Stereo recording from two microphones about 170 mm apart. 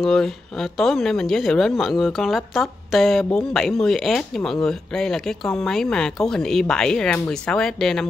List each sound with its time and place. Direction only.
0.0 s speech: centre (ahead or behind)